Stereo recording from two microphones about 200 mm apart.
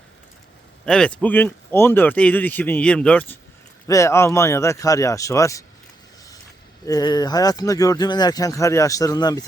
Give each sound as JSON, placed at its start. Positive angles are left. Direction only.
{"t": 0.9, "sound": "speech", "side_deg": 5}
{"t": 6.8, "sound": "speech", "side_deg": 20}